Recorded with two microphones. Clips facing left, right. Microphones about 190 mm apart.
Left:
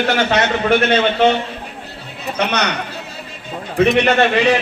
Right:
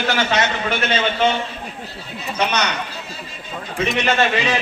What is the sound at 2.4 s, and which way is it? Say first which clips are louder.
Speech: left 2 dB; 60° left (ahead or behind).